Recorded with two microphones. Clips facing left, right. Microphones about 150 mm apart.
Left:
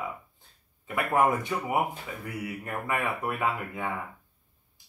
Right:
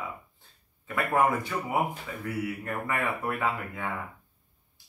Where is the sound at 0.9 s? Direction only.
20° left (ahead or behind).